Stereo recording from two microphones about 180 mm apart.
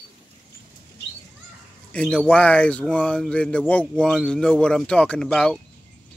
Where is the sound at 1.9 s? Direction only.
5° left (ahead or behind).